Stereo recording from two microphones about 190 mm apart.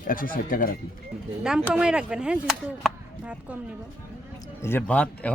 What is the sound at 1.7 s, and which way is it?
A woman's voice, 5° right (ahead or behind).